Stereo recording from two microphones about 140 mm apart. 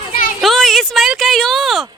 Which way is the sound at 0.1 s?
90° left.